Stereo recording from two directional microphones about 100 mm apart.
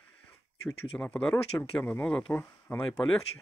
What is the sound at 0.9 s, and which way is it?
Speech, 10° left (ahead or behind).